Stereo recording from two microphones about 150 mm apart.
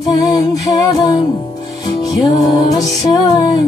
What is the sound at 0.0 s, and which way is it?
Music, 25° left (ahead or behind).